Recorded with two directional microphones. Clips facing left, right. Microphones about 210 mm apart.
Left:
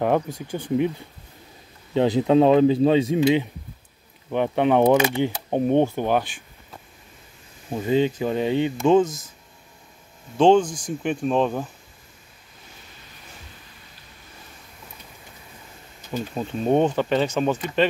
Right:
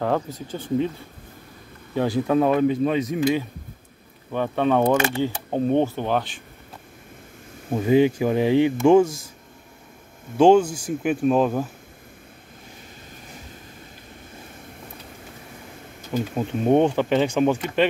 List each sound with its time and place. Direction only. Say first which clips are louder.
0.0 s speech: left 2 dB; 15° left (ahead or behind)
2.0 s speech: left 3 dB; 20° left (ahead or behind)
7.7 s speech: right 3 dB; 15° right (ahead or behind)
10.3 s speech: right 1 dB; 10° right (ahead or behind)
16.1 s speech: right 3 dB; 15° right (ahead or behind)